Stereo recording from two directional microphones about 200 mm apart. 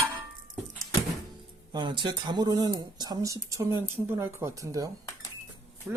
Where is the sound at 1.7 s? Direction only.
20° right (ahead or behind).